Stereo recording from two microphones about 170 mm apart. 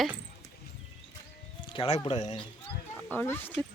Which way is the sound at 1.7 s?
35° left (ahead or behind).